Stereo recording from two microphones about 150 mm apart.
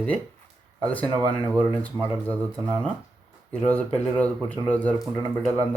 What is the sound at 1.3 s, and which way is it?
Speech, 10° left (ahead or behind).